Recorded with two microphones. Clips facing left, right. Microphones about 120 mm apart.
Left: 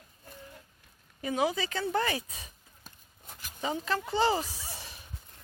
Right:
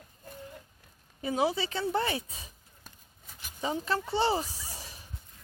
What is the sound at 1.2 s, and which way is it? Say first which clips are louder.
A woman's voice: right 1 dB; 30° right (ahead or behind).